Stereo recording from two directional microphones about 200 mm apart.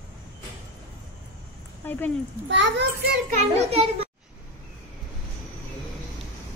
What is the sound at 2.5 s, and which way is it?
Speech, 65° right (ahead or behind).